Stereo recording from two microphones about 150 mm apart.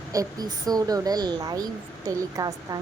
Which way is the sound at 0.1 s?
25° right (ahead or behind).